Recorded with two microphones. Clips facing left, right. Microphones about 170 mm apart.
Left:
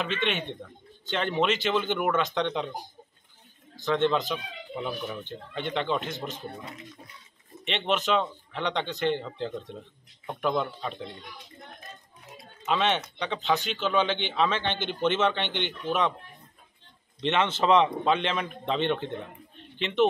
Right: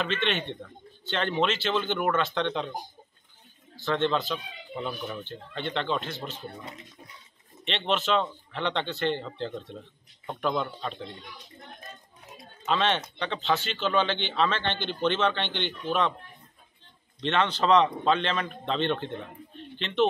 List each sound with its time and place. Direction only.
0.0 s speech: 10° left (ahead or behind)
3.9 s speech: 10° left (ahead or behind)
4.7 s speech: 5° left (ahead or behind)
7.6 s speech: 10° left (ahead or behind)
12.6 s speech: 10° left (ahead or behind)
17.2 s speech: 20° left (ahead or behind)